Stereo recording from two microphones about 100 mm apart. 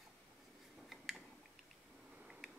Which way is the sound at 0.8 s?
Centre (ahead or behind).